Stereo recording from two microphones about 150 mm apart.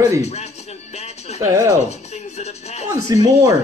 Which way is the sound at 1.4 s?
20° right (ahead or behind).